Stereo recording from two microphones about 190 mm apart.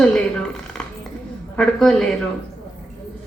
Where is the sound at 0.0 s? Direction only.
5° left (ahead or behind).